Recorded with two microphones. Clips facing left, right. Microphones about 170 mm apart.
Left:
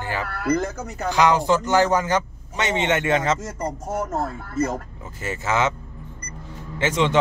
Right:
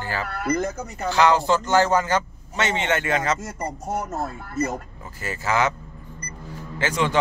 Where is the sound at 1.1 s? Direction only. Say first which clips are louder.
Even; 15° left (ahead or behind).